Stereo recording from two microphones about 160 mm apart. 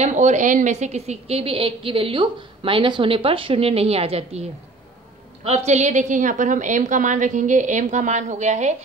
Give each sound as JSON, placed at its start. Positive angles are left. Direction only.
{"t": 0.0, "sound": "a woman's voice", "side_deg": -45}